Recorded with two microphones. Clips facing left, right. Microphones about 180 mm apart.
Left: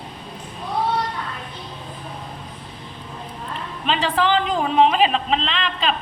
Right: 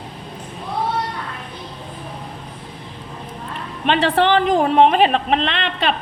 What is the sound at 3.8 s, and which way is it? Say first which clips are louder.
A woman's voice: right 4 dB; 60° right (ahead or behind).